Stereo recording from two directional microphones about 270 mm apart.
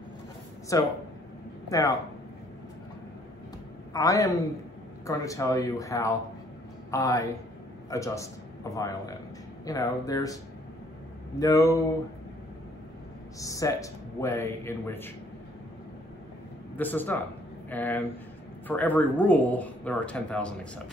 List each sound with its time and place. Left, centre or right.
0.7 s speech: centre
3.9 s a man's voice: centre
13.4 s speech: centre
16.7 s speech: centre